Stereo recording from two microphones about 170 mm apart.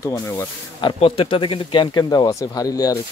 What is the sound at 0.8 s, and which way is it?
Speech, 30° left (ahead or behind).